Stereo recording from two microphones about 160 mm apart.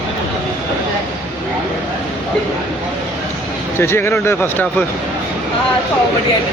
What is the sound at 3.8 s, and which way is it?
Speech, 15° left (ahead or behind).